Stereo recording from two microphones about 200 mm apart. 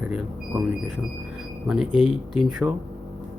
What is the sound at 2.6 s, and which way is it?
Speech, 15° right (ahead or behind).